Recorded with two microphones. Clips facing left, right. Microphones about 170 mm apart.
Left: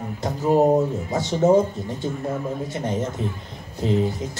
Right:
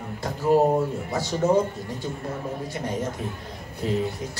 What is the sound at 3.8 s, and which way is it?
Speech, 25° left (ahead or behind).